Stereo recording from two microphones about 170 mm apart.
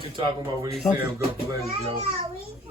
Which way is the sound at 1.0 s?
15° right (ahead or behind).